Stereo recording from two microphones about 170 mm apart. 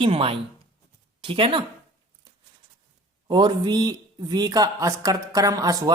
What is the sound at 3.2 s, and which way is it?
Speech, 25° right (ahead or behind).